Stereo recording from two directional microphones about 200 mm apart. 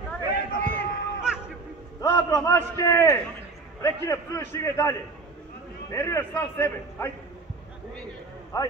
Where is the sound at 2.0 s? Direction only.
15° left (ahead or behind).